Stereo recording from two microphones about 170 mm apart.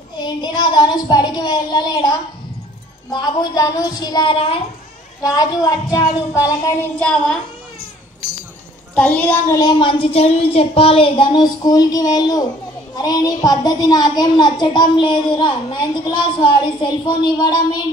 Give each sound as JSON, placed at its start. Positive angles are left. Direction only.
{"t": 0.2, "sound": "a woman's voice", "side_deg": 25}
{"t": 7.0, "sound": "speech", "side_deg": 5}
{"t": 8.9, "sound": "a woman's voice", "side_deg": 10}
{"t": 9.6, "sound": "a woman's voice", "side_deg": 25}